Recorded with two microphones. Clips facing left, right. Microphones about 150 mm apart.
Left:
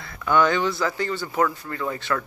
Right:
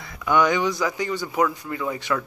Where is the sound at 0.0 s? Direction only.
15° right (ahead or behind).